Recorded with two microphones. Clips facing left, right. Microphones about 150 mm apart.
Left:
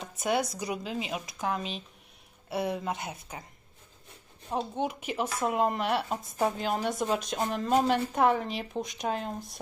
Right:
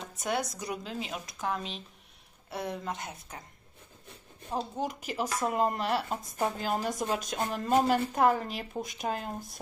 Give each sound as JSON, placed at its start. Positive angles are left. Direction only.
{"t": 0.0, "sound": "speech", "side_deg": 5}
{"t": 4.5, "sound": "speech", "side_deg": 0}